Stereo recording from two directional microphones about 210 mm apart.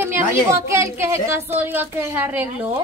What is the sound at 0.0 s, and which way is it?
A woman's voice, 10° right (ahead or behind).